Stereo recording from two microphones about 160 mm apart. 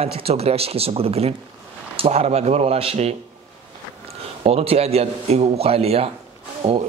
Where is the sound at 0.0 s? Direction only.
40° right (ahead or behind).